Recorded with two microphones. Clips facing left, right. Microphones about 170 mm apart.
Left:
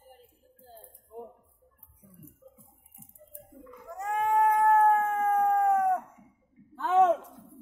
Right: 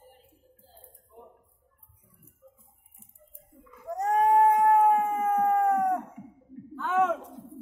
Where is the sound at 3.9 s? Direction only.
40° right (ahead or behind).